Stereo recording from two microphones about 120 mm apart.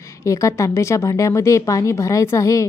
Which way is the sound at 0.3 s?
25° left (ahead or behind).